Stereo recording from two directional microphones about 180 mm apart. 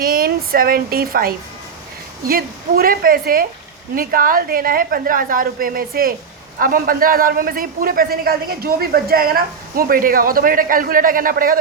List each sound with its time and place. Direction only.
0.0 s a woman's voice: 55° right (ahead or behind)